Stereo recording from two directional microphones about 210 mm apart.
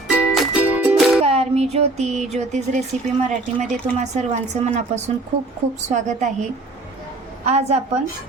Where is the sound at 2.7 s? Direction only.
35° right (ahead or behind).